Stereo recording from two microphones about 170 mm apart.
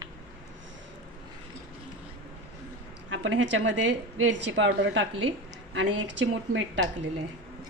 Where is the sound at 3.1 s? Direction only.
90° right.